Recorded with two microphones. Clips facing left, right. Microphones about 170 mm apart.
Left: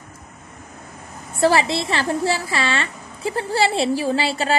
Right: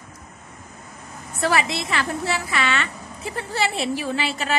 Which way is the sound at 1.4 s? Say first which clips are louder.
Left 5 dB; 30° left (ahead or behind).